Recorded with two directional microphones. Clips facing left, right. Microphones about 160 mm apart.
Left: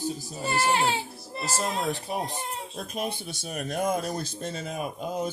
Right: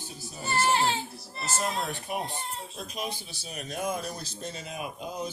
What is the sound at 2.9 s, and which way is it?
Speech, 55° left (ahead or behind).